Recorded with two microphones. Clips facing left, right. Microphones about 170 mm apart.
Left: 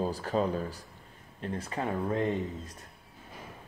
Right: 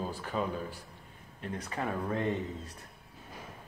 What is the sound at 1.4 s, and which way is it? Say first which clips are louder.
Speech: left 2 dB; 25° left (ahead or behind).